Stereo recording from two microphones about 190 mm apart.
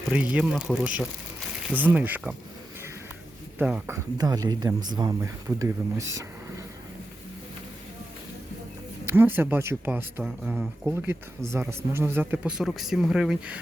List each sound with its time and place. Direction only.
0.1 s speech: 5° right (ahead or behind)
3.6 s speech: 10° right (ahead or behind)
9.0 s speech: 10° right (ahead or behind)